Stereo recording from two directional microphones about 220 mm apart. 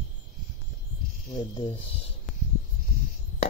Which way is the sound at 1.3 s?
20° left (ahead or behind).